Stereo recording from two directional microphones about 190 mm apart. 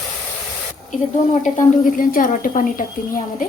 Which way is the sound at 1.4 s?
45° left (ahead or behind).